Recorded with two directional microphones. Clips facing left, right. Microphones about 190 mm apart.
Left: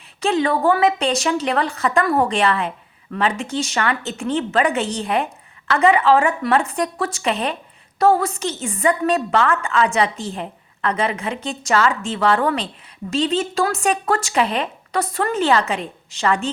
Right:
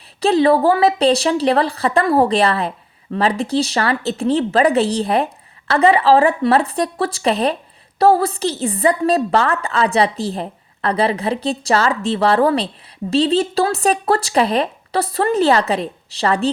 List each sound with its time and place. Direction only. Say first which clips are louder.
0.2 s a woman's voice: right 5 dB; 35° right (ahead or behind)